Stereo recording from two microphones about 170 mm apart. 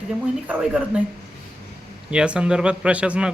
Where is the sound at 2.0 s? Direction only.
5° right (ahead or behind).